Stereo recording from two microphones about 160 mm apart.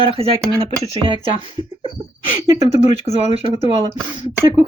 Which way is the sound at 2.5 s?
45° left (ahead or behind).